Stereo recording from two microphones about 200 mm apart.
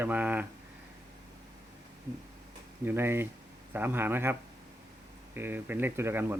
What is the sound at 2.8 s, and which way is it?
Speech, 10° right (ahead or behind).